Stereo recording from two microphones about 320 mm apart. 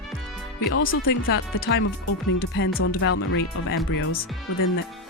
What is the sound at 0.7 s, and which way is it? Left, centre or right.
Speech, left.